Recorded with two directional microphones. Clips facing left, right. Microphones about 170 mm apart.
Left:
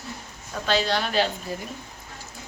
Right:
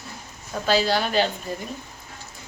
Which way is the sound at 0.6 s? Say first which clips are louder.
Right 3 dB; 5° right (ahead or behind).